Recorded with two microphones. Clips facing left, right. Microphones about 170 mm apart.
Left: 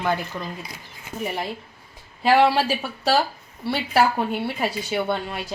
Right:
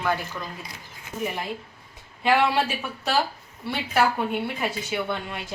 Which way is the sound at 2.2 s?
35° left (ahead or behind).